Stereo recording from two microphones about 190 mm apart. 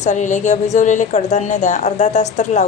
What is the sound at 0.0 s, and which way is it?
Speech, 40° left (ahead or behind).